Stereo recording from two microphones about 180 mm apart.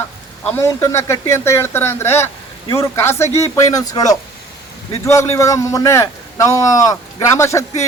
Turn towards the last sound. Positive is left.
turn(degrees=15)  # may be behind; listen again after turning